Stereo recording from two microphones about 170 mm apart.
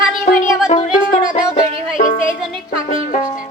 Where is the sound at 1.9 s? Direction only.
50° left (ahead or behind).